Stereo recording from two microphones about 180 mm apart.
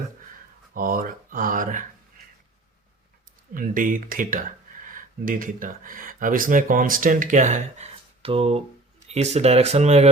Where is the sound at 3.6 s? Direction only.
50° right (ahead or behind).